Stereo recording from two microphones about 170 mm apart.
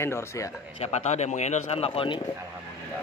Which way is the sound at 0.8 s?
40° left (ahead or behind).